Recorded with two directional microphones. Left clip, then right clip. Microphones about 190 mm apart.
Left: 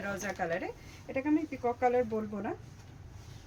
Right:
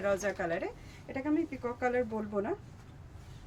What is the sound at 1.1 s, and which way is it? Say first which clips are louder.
Speech: left 2 dB; 20° right (ahead or behind).